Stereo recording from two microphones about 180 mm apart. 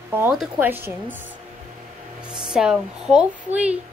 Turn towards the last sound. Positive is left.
turn(degrees=-5)  # may be behind; listen again after turning